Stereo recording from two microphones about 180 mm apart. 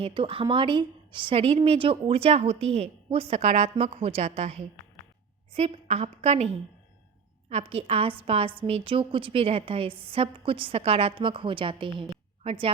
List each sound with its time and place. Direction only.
0.0 s a woman's voice: 30° right (ahead or behind)